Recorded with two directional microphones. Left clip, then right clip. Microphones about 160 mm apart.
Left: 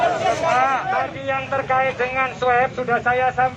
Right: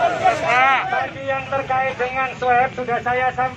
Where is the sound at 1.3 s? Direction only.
10° left (ahead or behind).